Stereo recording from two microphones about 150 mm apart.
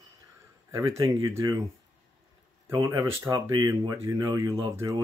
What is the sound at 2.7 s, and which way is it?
Speech, 20° right (ahead or behind).